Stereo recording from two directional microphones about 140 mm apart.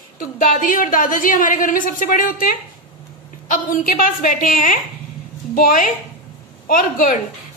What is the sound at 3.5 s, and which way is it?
A woman's voice, 75° left (ahead or behind).